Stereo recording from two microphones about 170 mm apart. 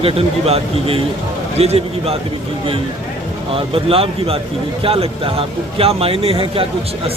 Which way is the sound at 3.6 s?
35° right (ahead or behind).